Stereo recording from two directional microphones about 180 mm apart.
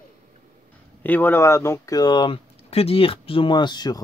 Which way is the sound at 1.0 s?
10° left (ahead or behind).